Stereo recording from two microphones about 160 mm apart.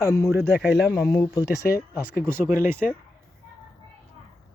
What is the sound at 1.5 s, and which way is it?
Speech, 85° left.